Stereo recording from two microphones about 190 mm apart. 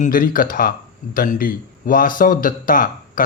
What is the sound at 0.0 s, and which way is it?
Speech, 45° left (ahead or behind).